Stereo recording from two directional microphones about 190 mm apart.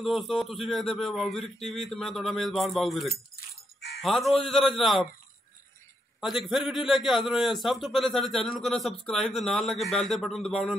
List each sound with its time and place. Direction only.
0.0 s speech: centre (ahead or behind)
3.3 s crow: 55° left (ahead or behind)
4.3 s speech: centre (ahead or behind)
6.2 s speech: centre (ahead or behind)